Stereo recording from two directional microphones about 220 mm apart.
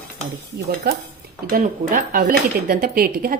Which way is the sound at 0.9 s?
45° right (ahead or behind).